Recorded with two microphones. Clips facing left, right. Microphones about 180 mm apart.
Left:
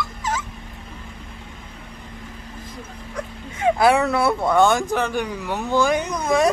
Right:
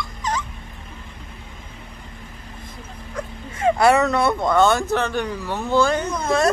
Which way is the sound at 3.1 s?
Centre (ahead or behind).